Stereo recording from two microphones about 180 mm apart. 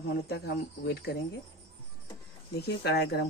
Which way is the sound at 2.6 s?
65° left (ahead or behind).